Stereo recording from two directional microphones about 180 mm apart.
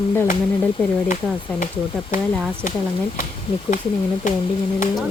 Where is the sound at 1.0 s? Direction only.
45° left (ahead or behind).